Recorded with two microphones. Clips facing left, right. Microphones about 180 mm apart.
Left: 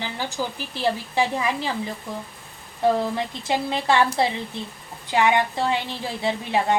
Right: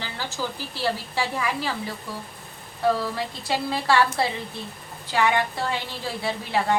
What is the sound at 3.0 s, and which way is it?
A woman's voice, 20° left (ahead or behind).